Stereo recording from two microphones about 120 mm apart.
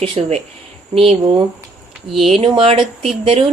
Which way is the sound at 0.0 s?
60° right (ahead or behind).